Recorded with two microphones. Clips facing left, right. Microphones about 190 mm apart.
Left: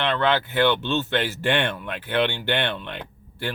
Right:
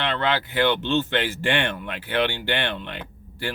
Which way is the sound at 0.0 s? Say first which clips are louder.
Left 2 dB; 15° right (ahead or behind).